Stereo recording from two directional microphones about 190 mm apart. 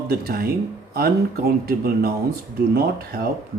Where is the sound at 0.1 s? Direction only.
55° right (ahead or behind).